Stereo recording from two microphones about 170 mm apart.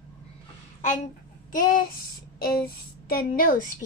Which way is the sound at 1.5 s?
55° left (ahead or behind).